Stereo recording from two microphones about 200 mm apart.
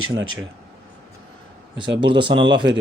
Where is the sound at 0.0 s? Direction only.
90° right.